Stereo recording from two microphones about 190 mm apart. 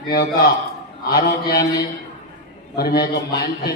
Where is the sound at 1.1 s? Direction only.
50° left (ahead or behind).